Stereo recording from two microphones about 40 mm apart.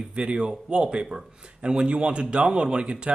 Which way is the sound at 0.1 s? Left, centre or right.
Right.